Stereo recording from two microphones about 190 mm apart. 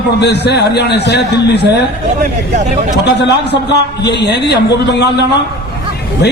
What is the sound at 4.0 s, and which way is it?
A man's voice, 60° left (ahead or behind).